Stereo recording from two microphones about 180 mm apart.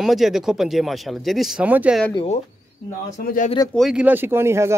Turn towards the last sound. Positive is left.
turn(degrees=-15)  # may be behind; listen again after turning